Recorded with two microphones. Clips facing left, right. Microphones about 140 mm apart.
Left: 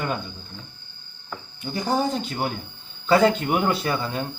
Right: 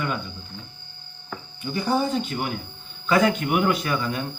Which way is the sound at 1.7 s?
40° left (ahead or behind).